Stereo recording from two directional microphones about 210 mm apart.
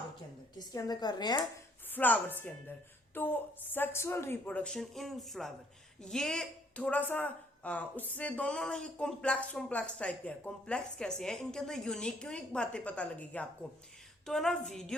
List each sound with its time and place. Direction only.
0.7 s speech: 20° left (ahead or behind)
1.9 s a woman's voice: 10° left (ahead or behind)